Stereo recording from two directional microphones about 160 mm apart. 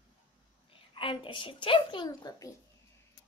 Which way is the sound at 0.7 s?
35° left (ahead or behind).